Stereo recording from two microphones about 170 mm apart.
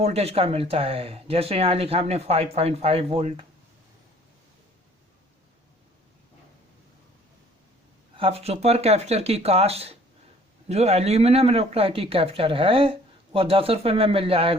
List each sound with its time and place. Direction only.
0.0 s speech: 40° right (ahead or behind)
8.1 s speech: 35° right (ahead or behind)